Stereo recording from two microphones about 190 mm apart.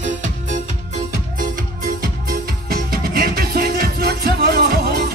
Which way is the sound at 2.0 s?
50° right (ahead or behind).